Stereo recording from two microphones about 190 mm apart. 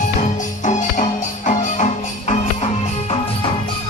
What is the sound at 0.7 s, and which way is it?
Music, 40° left (ahead or behind).